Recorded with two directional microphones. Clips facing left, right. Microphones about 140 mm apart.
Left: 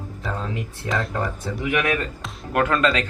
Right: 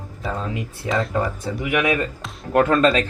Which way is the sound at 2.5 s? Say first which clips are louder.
Right 4 dB; 30° right (ahead or behind).